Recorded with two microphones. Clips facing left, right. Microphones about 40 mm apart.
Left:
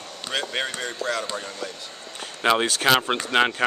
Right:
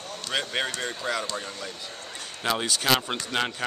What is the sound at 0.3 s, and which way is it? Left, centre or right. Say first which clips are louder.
Speech: left 1 dB; centre.